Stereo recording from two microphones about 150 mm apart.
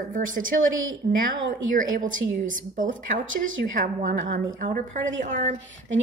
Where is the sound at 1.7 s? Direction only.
60° right (ahead or behind); by 4.4 s 80° right.